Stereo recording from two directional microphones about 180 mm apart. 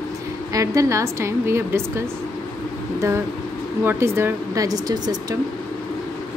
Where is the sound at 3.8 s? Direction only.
15° right (ahead or behind).